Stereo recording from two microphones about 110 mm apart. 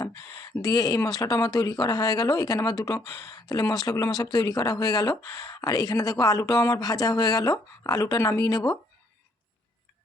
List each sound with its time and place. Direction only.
0.6 s speech: 35° left (ahead or behind)